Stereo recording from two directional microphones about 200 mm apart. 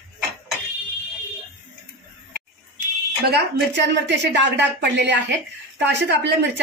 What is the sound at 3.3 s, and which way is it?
A woman's voice, 60° right (ahead or behind).